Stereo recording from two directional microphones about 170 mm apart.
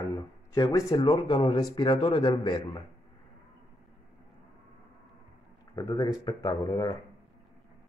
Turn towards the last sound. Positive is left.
turn(degrees=20)  # may be behind; listen again after turning